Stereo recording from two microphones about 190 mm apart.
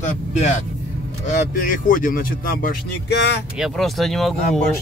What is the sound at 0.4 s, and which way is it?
Speech, 40° left (ahead or behind).